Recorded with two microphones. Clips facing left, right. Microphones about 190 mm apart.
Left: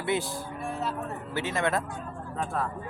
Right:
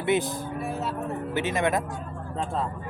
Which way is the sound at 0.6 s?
5° right (ahead or behind).